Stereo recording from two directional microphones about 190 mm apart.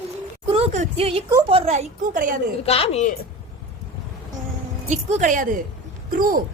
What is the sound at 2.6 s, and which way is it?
Speech, 30° left (ahead or behind).